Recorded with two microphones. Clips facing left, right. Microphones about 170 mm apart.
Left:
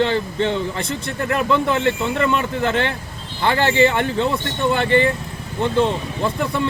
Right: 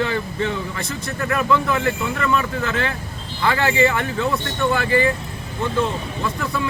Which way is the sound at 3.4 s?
30° left (ahead or behind).